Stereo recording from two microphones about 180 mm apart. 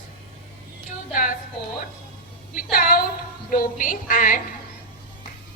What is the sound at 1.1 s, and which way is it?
Speech, 45° left (ahead or behind).